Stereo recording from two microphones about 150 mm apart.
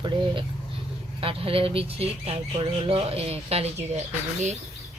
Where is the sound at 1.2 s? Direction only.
40° right (ahead or behind).